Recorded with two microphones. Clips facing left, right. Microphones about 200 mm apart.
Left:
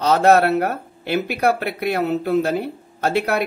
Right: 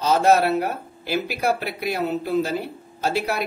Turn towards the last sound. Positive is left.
turn(degrees=60)  # may be behind; listen again after turning